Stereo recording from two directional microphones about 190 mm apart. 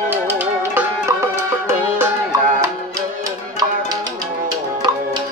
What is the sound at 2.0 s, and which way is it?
Music, 15° right (ahead or behind).